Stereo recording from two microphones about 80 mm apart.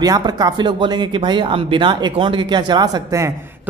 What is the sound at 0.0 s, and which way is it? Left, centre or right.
Speech, right.